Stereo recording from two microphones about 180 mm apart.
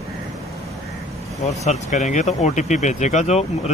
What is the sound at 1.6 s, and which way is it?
Speech, 40° left (ahead or behind).